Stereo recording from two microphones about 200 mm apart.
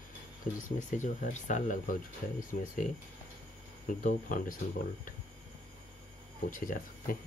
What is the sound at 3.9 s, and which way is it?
Speech, 40° left (ahead or behind).